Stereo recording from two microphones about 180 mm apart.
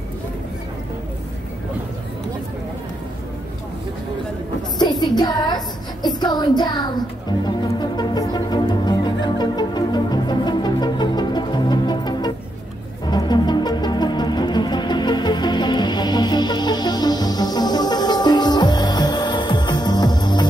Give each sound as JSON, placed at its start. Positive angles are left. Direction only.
{"t": 4.7, "sound": "child singing", "side_deg": 25}
{"t": 6.0, "sound": "music", "side_deg": 25}